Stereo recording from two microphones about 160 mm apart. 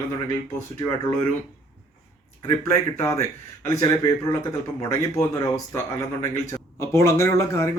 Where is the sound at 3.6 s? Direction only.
20° left (ahead or behind).